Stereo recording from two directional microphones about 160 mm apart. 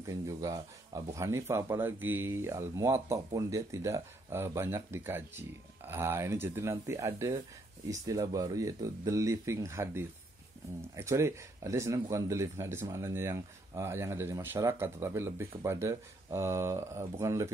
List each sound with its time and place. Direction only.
0.0 s speech: 20° right (ahead or behind)